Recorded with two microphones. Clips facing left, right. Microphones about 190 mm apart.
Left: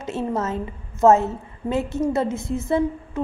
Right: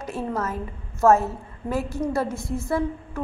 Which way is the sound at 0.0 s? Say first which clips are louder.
Left 3 dB; 25° left (ahead or behind).